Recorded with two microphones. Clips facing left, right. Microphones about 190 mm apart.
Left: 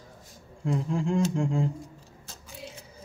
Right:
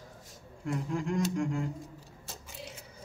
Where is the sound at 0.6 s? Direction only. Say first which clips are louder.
Left 5 dB; 25° left (ahead or behind).